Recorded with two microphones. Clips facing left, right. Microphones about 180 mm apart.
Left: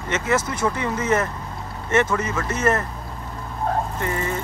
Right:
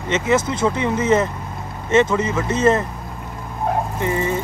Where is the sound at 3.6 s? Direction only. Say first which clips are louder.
Right 3 dB; 15° right (ahead or behind).